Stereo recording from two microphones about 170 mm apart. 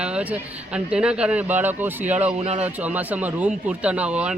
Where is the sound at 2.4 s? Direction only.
40° right (ahead or behind).